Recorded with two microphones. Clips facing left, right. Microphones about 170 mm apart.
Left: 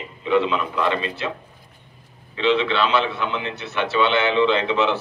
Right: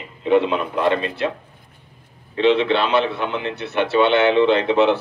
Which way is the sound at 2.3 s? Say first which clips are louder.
Right 3 dB; 55° right (ahead or behind).